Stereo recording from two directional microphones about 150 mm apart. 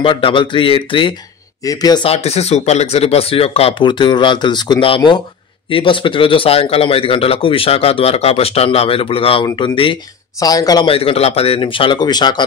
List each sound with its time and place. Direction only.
0.0 s a man's voice: 35° left (ahead or behind)
1.6 s speech: 25° left (ahead or behind)
2.0 s a man's voice: 45° left (ahead or behind); by 10.9 s 25° left (ahead or behind)
10.9 s a man's voice: 40° left (ahead or behind)